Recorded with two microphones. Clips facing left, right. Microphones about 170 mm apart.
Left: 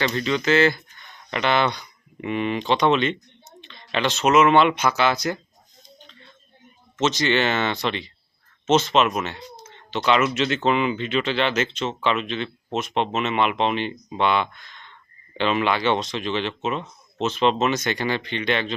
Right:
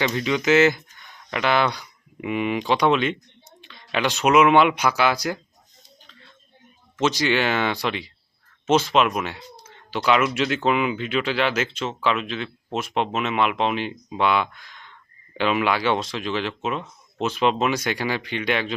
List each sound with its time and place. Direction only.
0.0 s speech: 15° right (ahead or behind)
1.3 s speech: 5° right (ahead or behind)
7.0 s speech: 10° right (ahead or behind)